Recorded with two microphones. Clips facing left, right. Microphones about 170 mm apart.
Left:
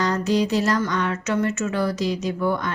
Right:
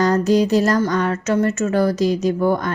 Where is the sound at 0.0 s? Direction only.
45° right (ahead or behind).